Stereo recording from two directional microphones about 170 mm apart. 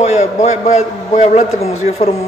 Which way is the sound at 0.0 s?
40° left (ahead or behind).